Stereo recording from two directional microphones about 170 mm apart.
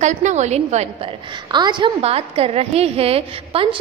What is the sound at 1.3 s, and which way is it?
A woman's voice, 25° right (ahead or behind).